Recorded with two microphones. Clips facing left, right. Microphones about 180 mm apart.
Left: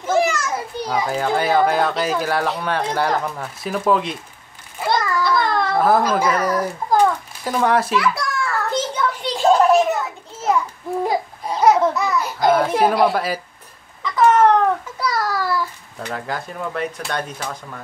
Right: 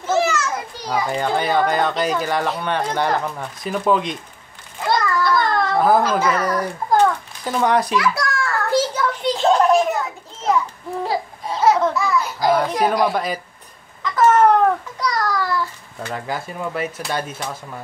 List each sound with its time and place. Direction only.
0.0 s a child's voice: 10° left (ahead or behind)
4.7 s a sound: 5° left (ahead or behind)
6.2 s babbling: 10° left (ahead or behind); by 9.3 s 5° right (ahead or behind)
9.4 s children playing: 5° left (ahead or behind)
11.6 s babbling: 20° left (ahead or behind)
12.4 s a child's voice: centre (ahead or behind)
14.0 s cat: 5° right (ahead or behind)
15.0 s a sound: 5° left (ahead or behind)
16.1 s a child's voice: centre (ahead or behind)